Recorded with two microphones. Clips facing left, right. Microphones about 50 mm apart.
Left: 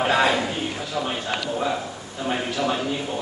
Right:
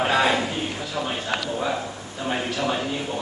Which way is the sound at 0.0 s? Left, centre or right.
Centre.